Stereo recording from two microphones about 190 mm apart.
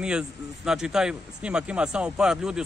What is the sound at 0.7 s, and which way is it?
Speech, 5° right (ahead or behind).